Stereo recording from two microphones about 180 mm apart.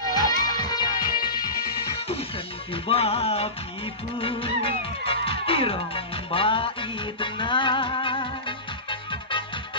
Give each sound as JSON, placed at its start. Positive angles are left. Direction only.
{"t": 0.1, "sound": "music", "side_deg": 20}
{"t": 2.7, "sound": "music", "side_deg": 35}